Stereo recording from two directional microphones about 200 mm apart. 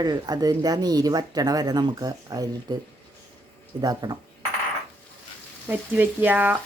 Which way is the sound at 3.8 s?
20° right (ahead or behind).